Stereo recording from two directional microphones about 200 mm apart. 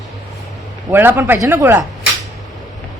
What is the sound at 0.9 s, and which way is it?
Speech, 10° right (ahead or behind).